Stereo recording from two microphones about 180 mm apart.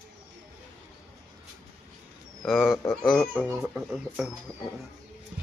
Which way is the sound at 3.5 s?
15° right (ahead or behind).